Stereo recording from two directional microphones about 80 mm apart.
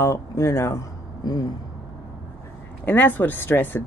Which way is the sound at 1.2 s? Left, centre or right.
Left.